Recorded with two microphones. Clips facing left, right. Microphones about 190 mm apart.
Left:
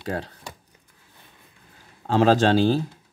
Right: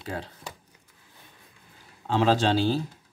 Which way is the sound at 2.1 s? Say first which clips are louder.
Left 4 dB; 45° left (ahead or behind).